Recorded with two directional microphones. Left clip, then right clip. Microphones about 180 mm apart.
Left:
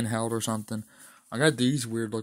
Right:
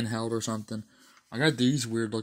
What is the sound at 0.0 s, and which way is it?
Speech, 30° left (ahead or behind).